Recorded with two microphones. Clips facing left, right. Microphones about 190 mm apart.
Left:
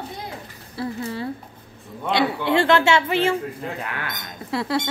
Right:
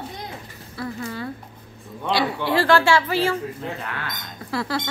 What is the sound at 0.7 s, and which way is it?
Speech, 25° left (ahead or behind).